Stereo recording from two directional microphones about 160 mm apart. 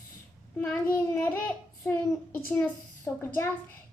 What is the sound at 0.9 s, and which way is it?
A child's voice, 15° left (ahead or behind).